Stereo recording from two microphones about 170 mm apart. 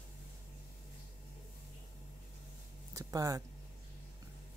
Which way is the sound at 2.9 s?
20° right (ahead or behind).